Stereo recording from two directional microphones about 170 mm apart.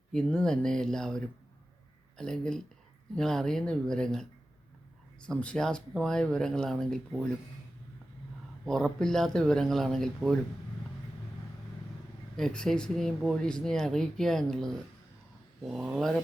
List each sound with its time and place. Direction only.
0.1 s speech: 5° left (ahead or behind)
8.6 s speech: 5° left (ahead or behind)
12.4 s speech: 5° left (ahead or behind)